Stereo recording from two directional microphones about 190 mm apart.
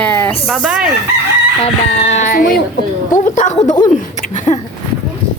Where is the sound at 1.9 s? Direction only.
35° left (ahead or behind).